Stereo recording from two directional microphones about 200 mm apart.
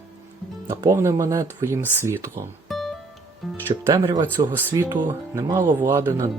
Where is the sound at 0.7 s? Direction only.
15° right (ahead or behind).